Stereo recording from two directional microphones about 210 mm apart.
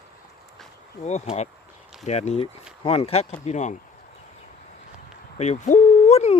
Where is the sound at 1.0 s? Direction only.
30° left (ahead or behind).